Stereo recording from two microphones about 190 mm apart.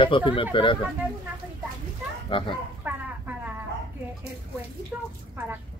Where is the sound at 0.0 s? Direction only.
25° left (ahead or behind).